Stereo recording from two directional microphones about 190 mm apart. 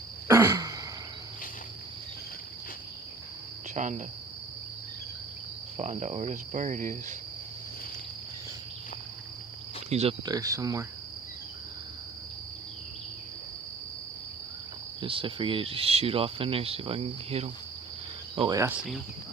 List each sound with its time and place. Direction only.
0.3 s throat clearing: 15° right (ahead or behind)
3.8 s cricket: 40° right (ahead or behind)
5.7 s cricket: 40° right (ahead or behind)
9.9 s cricket: 35° right (ahead or behind)
10.2 s speech: 20° right (ahead or behind)
15.0 s speech: 25° right (ahead or behind)
18.3 s speech: 20° right (ahead or behind)